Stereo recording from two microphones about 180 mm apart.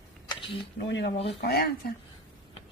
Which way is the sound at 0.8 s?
75° left (ahead or behind).